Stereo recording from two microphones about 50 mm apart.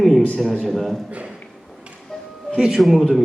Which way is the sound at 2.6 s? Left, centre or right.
Centre.